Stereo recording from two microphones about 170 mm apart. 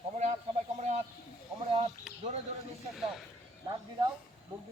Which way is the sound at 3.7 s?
30° right (ahead or behind).